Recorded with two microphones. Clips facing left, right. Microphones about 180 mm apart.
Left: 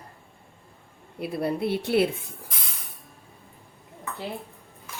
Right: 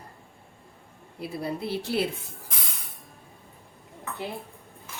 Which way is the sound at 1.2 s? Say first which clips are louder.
Left 5 dB; 60° left (ahead or behind).